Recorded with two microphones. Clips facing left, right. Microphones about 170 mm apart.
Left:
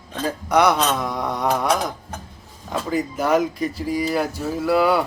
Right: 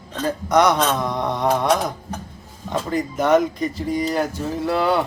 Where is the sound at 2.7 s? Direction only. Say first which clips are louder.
Even; 5° left (ahead or behind).